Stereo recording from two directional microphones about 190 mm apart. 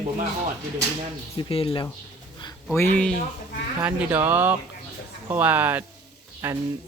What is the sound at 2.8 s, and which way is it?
Speech, 10° left (ahead or behind).